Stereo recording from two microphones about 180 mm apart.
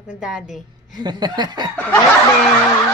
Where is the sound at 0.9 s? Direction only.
25° right (ahead or behind).